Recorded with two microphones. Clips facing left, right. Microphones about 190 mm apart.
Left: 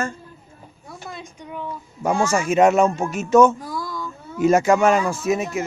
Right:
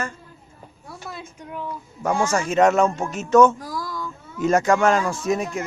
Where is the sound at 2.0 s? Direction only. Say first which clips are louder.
Left 2 dB; 10° left (ahead or behind).